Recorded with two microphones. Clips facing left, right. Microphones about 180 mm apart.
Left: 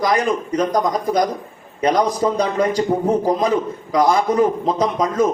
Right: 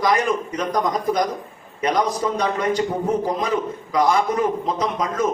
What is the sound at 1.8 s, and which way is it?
A man's voice, 35° left (ahead or behind).